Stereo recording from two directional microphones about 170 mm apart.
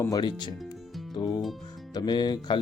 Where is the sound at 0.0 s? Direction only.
25° left (ahead or behind).